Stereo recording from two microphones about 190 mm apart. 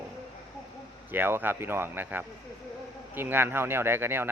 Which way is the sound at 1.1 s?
10° right (ahead or behind).